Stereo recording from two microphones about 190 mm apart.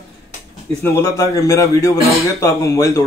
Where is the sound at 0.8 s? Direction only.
15° left (ahead or behind).